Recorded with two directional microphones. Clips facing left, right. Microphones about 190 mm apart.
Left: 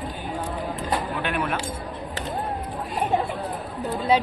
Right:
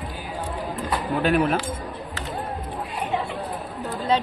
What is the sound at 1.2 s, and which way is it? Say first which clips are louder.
Speech: right 6 dB; 35° right (ahead or behind).